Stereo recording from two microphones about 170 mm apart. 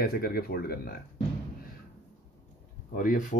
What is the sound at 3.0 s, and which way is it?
Speech, 55° left (ahead or behind).